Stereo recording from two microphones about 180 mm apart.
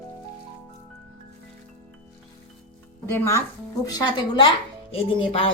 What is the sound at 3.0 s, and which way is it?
A woman's voice, 15° left (ahead or behind).